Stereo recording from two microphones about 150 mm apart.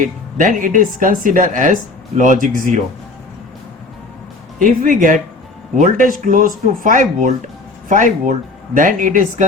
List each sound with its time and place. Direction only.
0.0 s speech: 60° right (ahead or behind)
4.6 s speech: 65° right (ahead or behind)